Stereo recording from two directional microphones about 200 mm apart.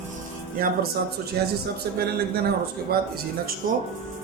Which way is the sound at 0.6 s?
50° right (ahead or behind).